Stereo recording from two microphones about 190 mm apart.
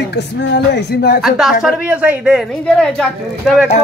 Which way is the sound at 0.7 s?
60° left (ahead or behind).